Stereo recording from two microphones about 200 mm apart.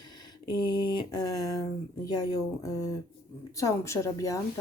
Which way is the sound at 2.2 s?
15° left (ahead or behind).